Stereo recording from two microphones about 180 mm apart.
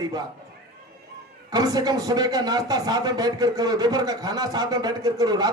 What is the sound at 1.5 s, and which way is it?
Speech, 20° right (ahead or behind).